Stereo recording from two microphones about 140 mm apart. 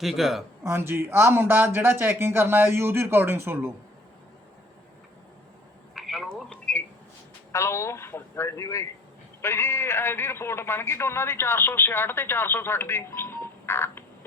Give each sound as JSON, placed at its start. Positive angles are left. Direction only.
{"t": 0.0, "sound": "speech", "side_deg": 0}
{"t": 0.6, "sound": "speech", "side_deg": -15}
{"t": 5.9, "sound": "telephone", "side_deg": 0}
{"t": 7.5, "sound": "a man's voice", "side_deg": 20}